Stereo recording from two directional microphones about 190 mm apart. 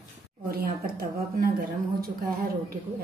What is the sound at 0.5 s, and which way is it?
A woman's voice, 50° right (ahead or behind).